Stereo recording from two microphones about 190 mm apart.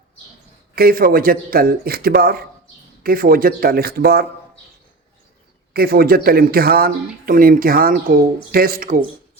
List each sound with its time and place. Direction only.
0.8 s speech: 50° right (ahead or behind)
5.7 s speech: 50° right (ahead or behind)